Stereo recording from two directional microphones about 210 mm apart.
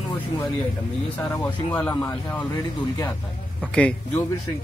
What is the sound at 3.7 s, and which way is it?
Speech, 5° left (ahead or behind).